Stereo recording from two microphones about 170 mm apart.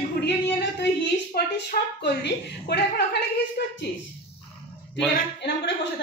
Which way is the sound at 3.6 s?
65° left (ahead or behind).